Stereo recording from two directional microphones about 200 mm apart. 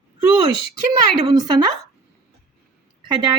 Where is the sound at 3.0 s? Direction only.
20° right (ahead or behind).